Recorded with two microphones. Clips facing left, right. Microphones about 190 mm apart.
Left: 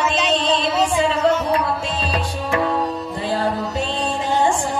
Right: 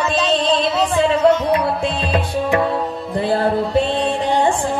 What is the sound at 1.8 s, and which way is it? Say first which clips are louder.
Music: right 4 dB; 55° right (ahead or behind).